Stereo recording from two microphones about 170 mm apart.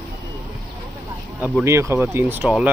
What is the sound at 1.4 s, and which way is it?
Speech, 15° right (ahead or behind).